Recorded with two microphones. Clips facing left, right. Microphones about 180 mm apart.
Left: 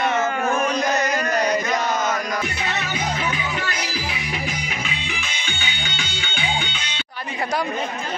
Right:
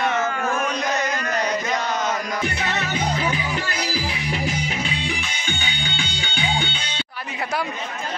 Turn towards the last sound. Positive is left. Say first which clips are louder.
# right 2 dB
turn(degrees=-30)  # may be behind; listen again after turning